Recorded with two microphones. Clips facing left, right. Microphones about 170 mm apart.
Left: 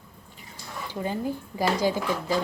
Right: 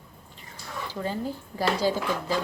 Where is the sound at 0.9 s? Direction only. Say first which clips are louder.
Left 2 dB; 15° left (ahead or behind).